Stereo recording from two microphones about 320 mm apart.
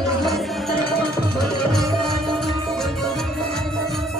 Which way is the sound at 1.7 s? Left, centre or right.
Centre.